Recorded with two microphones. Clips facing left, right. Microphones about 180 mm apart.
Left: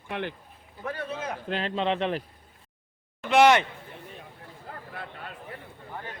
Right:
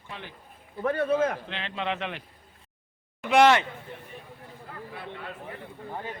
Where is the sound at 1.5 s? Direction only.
35° left (ahead or behind).